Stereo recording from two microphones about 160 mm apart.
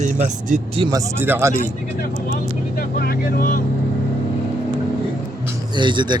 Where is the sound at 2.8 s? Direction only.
65° left (ahead or behind).